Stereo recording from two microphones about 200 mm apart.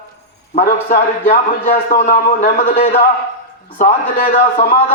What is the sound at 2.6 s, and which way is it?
Speech, 30° left (ahead or behind).